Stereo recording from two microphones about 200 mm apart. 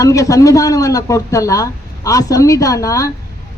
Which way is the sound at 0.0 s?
15° left (ahead or behind).